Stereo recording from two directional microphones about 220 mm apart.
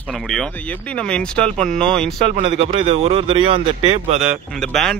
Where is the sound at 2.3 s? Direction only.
25° right (ahead or behind).